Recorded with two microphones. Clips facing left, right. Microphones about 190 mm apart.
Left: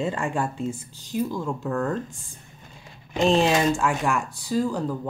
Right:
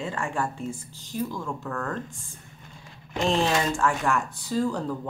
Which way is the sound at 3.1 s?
20° left (ahead or behind).